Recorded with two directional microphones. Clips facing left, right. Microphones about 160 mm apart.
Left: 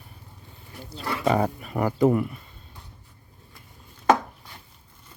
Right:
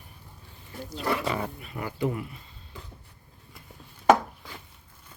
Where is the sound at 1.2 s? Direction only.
45° left (ahead or behind).